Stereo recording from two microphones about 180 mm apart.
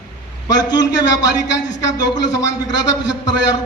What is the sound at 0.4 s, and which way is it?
A man's voice, 20° left (ahead or behind).